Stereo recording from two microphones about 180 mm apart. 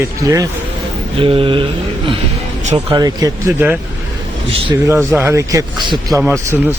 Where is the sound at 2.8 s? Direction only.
20° right (ahead or behind).